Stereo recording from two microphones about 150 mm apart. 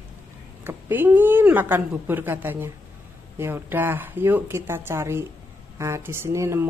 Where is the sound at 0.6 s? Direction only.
15° right (ahead or behind).